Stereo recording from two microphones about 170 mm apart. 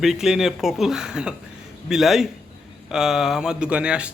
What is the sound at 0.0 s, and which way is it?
Speech, centre (ahead or behind).